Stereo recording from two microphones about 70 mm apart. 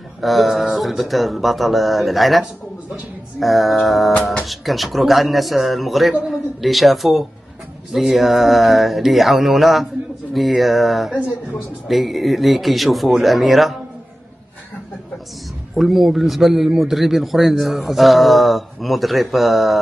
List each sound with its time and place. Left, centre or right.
0.2 s a man's voice: centre
4.1 s speech: centre
4.5 s a man's voice: centre
15.7 s a man's voice: centre